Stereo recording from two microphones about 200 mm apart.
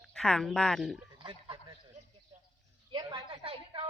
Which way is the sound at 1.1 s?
25° right (ahead or behind).